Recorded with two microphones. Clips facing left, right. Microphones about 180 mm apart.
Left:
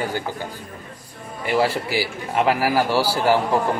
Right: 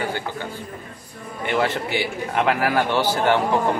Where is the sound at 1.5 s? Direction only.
5° left (ahead or behind).